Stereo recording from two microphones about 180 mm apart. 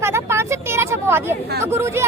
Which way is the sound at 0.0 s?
15° right (ahead or behind).